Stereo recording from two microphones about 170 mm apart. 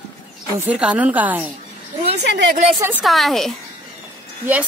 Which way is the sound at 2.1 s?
90° right.